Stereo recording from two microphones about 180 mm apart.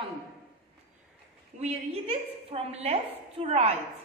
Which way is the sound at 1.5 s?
40° right (ahead or behind).